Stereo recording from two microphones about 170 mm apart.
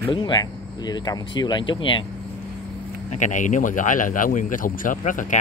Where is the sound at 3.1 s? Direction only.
45° left (ahead or behind).